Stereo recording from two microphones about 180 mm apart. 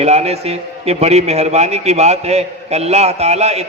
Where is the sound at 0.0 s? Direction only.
35° right (ahead or behind).